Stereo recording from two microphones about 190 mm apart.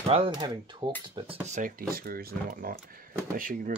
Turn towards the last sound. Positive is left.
turn(degrees=-45)  # may be behind; listen again after turning